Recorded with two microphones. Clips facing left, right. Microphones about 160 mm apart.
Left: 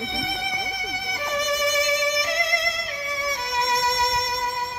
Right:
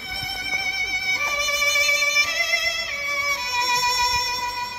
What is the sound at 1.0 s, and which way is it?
Music, 55° left (ahead or behind).